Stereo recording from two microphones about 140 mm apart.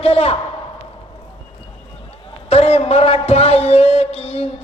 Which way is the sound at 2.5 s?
45° left (ahead or behind).